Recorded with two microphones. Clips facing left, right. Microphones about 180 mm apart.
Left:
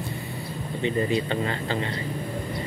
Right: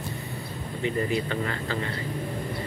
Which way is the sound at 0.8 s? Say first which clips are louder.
Left 2 dB; 25° left (ahead or behind).